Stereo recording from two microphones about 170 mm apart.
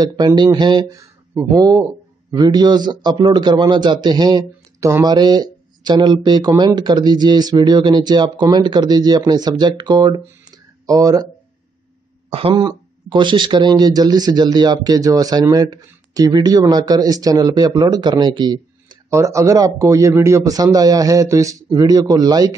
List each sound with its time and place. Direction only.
0.0 s speech: 25° right (ahead or behind)
12.3 s speech: 35° right (ahead or behind)